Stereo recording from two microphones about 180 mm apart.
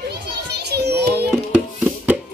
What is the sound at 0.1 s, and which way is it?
Children playing, 65° right (ahead or behind).